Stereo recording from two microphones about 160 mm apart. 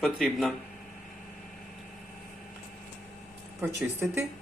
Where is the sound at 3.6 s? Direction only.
15° right (ahead or behind).